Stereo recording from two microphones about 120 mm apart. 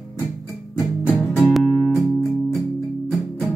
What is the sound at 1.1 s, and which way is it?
Music, centre (ahead or behind).